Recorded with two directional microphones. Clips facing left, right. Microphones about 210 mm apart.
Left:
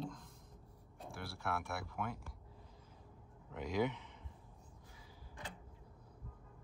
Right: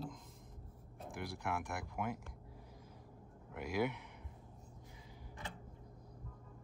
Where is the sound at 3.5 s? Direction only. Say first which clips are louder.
Left 1 dB; 10° right (ahead or behind).